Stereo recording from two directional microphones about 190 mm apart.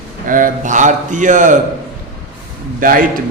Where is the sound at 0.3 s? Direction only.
45° right (ahead or behind).